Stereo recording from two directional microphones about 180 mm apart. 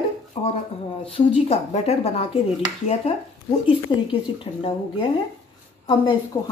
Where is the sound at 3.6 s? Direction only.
30° left (ahead or behind).